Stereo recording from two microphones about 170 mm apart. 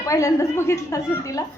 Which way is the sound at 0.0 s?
20° left (ahead or behind).